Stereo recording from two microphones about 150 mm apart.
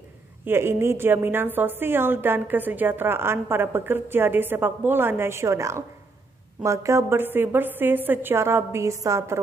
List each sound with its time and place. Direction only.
0.5 s a woman's voice: 15° right (ahead or behind)